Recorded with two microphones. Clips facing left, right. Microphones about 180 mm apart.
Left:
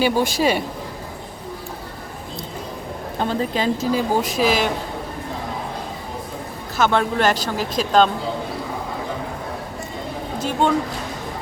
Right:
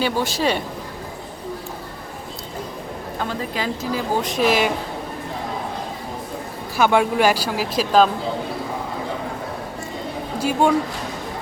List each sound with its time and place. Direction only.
0.0 s speech: 10° left (ahead or behind)
3.2 s a woman's voice: 25° left (ahead or behind)
4.2 s speech: 5° left (ahead or behind)
6.7 s speech: 10° right (ahead or behind)
10.3 s a woman's voice: 10° right (ahead or behind)